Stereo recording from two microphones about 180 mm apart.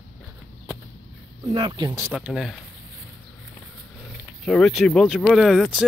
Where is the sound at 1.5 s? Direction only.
25° right (ahead or behind).